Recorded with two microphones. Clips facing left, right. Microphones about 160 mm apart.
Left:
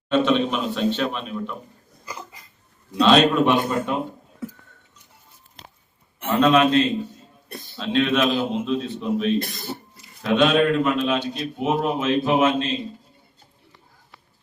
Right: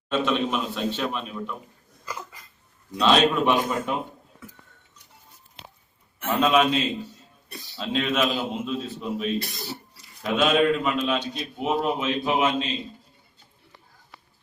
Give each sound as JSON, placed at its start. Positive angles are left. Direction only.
{"t": 0.1, "sound": "a man's voice", "side_deg": -5}
{"t": 3.0, "sound": "a man's voice", "side_deg": 0}
{"t": 6.2, "sound": "a man's voice", "side_deg": -5}
{"t": 9.4, "sound": "a sound", "side_deg": 50}
{"t": 10.2, "sound": "a man's voice", "side_deg": 0}